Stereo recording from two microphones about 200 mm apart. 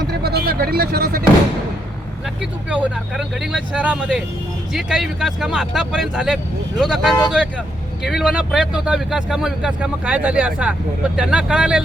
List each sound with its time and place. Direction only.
0.1 s speech: 55° right (ahead or behind)
2.6 s speech: 5° right (ahead or behind)